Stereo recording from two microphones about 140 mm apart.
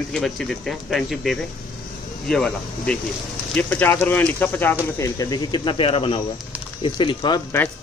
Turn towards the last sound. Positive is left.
turn(degrees=35)  # may be behind; listen again after turning